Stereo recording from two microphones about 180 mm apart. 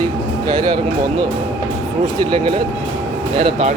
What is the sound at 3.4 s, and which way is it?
Speech, 35° right (ahead or behind).